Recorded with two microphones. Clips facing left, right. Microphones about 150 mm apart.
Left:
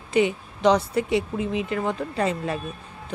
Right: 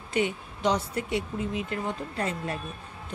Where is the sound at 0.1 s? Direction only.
90° left.